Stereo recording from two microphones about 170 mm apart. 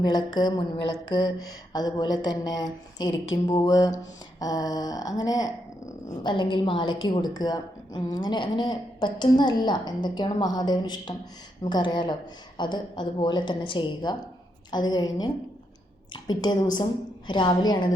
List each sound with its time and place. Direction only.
0.0 s a woman's voice: 25° left (ahead or behind)